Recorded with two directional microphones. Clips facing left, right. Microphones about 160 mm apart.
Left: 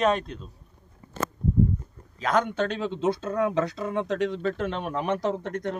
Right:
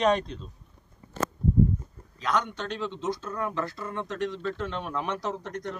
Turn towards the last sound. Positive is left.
turn(degrees=55)  # may be behind; listen again after turning